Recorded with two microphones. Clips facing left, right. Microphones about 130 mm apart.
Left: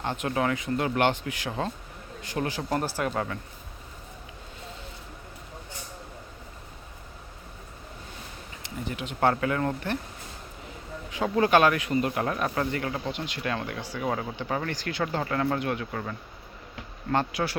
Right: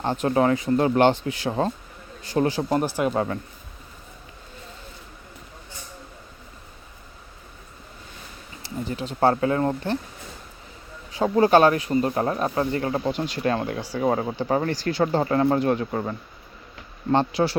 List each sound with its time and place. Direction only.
0.0 s speech: 35° right (ahead or behind)
8.6 s speech: 35° right (ahead or behind)
11.1 s speech: 30° right (ahead or behind)